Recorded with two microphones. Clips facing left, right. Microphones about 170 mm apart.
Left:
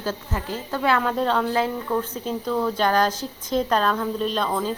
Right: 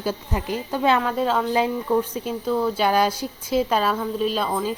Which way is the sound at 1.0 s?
5° right (ahead or behind).